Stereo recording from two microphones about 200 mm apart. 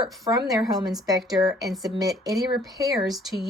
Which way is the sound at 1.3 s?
20° right (ahead or behind).